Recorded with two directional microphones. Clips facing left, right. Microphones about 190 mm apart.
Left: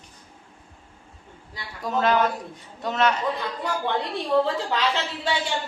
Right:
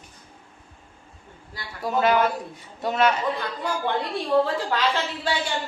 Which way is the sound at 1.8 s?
10° right (ahead or behind).